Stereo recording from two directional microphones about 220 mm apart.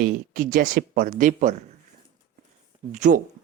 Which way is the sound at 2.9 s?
35° right (ahead or behind).